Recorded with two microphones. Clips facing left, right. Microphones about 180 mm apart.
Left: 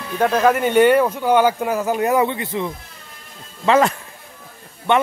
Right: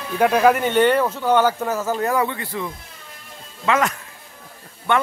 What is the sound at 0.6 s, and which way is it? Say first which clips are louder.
Speech: left 3 dB; 10° left (ahead or behind).